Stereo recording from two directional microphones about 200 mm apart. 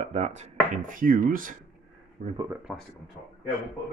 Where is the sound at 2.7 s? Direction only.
5° right (ahead or behind).